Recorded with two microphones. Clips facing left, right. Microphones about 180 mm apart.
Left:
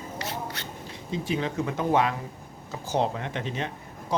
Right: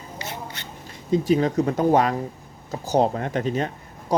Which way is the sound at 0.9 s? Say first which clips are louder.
Right 10 dB; 45° right (ahead or behind).